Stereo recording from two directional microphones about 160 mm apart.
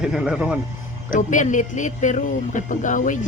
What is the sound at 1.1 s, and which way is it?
Speech, 50° left (ahead or behind).